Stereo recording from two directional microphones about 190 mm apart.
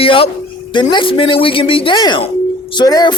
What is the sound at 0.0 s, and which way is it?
Speech, 30° left (ahead or behind).